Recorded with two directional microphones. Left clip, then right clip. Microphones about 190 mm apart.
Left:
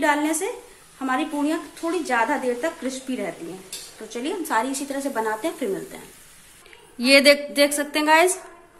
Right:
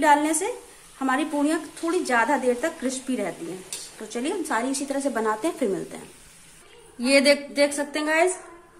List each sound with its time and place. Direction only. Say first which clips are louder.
0.0 s a woman's voice: right 2 dB; centre (ahead or behind)
0.9 s a woman's voice: even; 15° right (ahead or behind)
7.0 s a woman's voice: left 4 dB; 15° left (ahead or behind)